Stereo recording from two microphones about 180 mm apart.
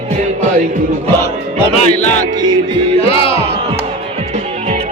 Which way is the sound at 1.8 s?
40° left (ahead or behind).